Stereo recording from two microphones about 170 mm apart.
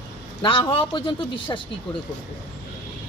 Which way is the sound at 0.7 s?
30° left (ahead or behind).